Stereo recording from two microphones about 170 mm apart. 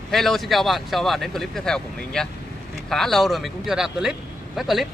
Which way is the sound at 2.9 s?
Centre (ahead or behind).